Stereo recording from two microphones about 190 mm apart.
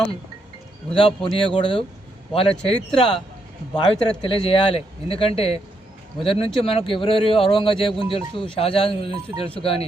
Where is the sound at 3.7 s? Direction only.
25° left (ahead or behind).